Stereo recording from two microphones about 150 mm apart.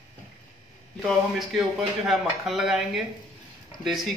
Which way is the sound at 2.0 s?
Centre (ahead or behind).